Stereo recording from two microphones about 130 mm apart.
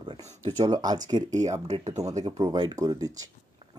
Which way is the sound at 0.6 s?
30° right (ahead or behind).